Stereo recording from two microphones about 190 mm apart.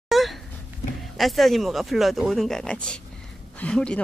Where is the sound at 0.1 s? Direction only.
Centre (ahead or behind).